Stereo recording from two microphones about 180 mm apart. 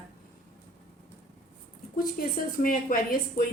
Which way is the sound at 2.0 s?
50° left (ahead or behind).